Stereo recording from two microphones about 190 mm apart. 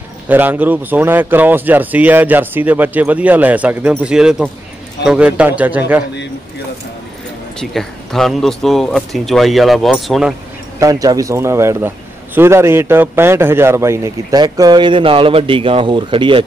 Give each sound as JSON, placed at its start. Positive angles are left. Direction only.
{"t": 0.3, "sound": "speech", "side_deg": -10}
{"t": 7.7, "sound": "speech", "side_deg": 0}
{"t": 10.8, "sound": "a man's voice", "side_deg": -20}